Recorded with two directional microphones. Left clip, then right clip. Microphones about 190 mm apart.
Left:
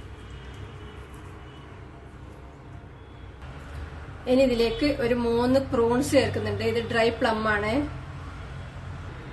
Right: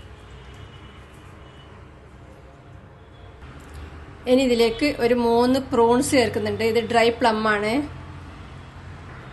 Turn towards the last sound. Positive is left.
turn(degrees=-40)  # may be behind; listen again after turning